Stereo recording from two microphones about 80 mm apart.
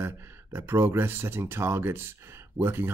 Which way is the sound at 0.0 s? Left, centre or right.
Right.